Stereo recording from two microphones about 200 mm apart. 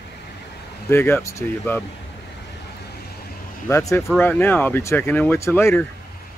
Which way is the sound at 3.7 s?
15° left (ahead or behind).